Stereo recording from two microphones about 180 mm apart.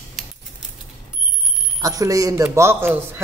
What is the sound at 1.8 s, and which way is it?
Speech, 20° right (ahead or behind).